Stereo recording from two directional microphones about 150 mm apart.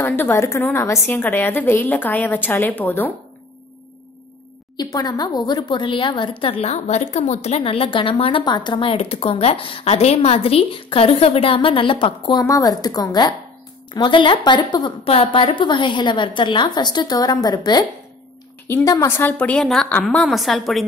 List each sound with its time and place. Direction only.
0.0 s a woman's voice: 15° left (ahead or behind)
4.7 s speech: 25° left (ahead or behind)
18.7 s a woman's voice: 15° left (ahead or behind); by 20.8 s centre (ahead or behind)